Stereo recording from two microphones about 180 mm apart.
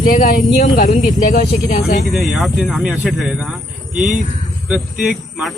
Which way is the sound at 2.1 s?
Centre (ahead or behind).